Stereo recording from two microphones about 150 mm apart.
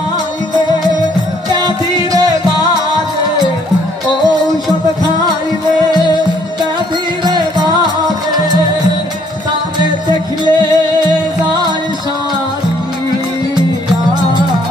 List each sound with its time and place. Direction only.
2.1 s music: 25° right (ahead or behind)
7.2 s music: 30° right (ahead or behind)
10.4 s music: 30° right (ahead or behind)